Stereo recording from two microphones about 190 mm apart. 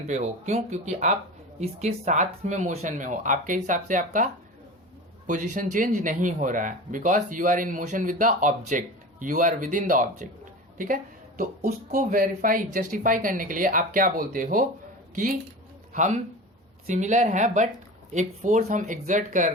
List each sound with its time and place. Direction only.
0.1 s speech: 35° right (ahead or behind)